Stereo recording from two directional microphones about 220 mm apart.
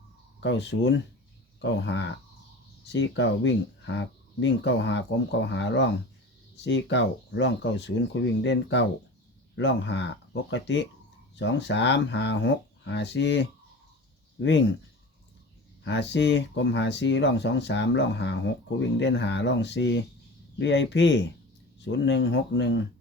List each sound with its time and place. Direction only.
0.3 s speech: 55° left (ahead or behind)
15.8 s speech: 55° left (ahead or behind)